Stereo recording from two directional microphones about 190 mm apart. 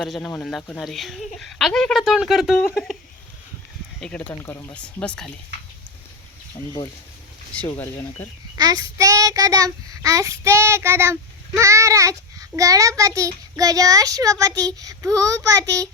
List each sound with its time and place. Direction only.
0.0 s speech: 5° left (ahead or behind)
4.0 s speech: 5° left (ahead or behind)
8.5 s child singing: 20° right (ahead or behind)
14.8 s a child's voice: 20° right (ahead or behind)